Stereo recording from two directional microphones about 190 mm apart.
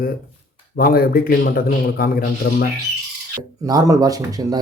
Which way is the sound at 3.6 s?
20° right (ahead or behind).